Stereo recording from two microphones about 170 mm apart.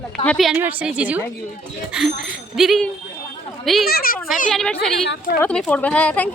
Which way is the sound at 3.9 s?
60° left (ahead or behind).